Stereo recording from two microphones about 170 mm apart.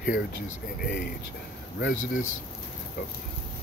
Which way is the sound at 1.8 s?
65° left (ahead or behind).